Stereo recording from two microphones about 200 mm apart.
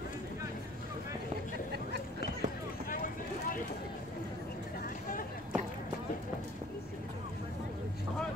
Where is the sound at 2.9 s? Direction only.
45° left (ahead or behind).